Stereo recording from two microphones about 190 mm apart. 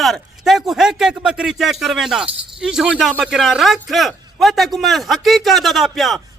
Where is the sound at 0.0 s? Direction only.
Centre (ahead or behind).